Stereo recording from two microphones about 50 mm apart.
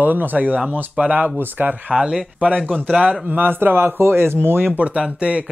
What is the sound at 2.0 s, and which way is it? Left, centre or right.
Speech, centre.